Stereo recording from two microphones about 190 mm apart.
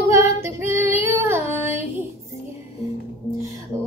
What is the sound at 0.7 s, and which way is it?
Female singing, 10° right (ahead or behind).